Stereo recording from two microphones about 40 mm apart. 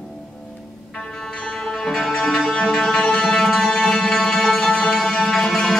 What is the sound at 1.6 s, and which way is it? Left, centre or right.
Music, centre.